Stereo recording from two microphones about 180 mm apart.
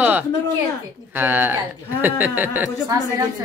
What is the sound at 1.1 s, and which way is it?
Speech, 10° right (ahead or behind).